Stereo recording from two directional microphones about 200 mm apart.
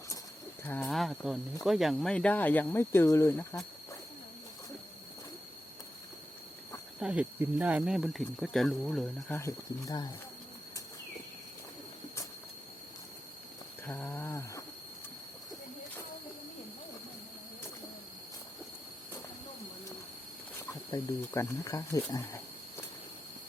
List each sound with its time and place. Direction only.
0.6 s speech: 10° left (ahead or behind)
7.0 s speech: 5° right (ahead or behind); by 10.1 s 20° left (ahead or behind)
13.8 s speech: 10° left (ahead or behind)
20.9 s speech: 15° left (ahead or behind)